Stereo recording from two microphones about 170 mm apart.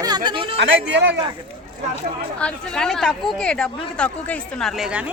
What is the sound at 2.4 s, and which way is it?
Speech, 5° left (ahead or behind).